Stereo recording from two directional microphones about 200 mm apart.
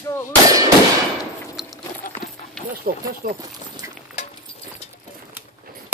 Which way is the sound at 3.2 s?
45° right (ahead or behind).